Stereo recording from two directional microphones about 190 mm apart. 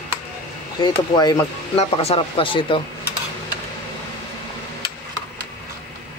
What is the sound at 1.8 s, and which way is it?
Speech, 30° left (ahead or behind).